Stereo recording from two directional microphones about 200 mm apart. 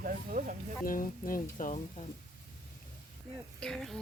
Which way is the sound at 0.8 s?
45° left (ahead or behind).